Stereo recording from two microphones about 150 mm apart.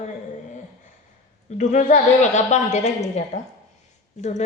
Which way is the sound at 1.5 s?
50° left (ahead or behind).